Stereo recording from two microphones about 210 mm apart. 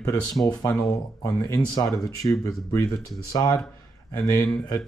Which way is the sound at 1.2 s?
15° left (ahead or behind).